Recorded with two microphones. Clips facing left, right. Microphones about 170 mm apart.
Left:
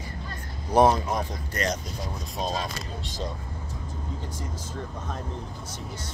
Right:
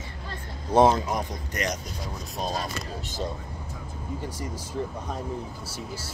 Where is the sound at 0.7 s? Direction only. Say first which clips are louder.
Even; 20° right (ahead or behind).